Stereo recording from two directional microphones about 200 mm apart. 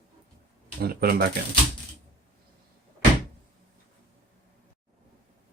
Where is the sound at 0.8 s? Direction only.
50° right (ahead or behind).